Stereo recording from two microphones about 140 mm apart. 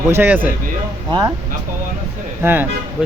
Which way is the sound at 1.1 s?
30° right (ahead or behind).